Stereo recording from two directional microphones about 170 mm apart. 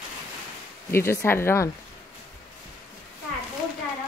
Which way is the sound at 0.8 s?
15° left (ahead or behind).